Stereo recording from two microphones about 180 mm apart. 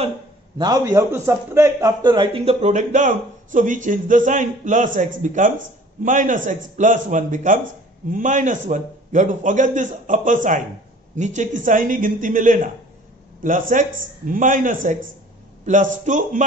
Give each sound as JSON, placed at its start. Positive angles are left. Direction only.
{"t": 0.6, "sound": "a man's voice", "side_deg": -25}